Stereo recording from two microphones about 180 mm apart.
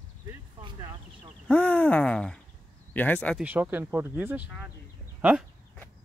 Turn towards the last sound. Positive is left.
turn(degrees=-10)  # may be behind; listen again after turning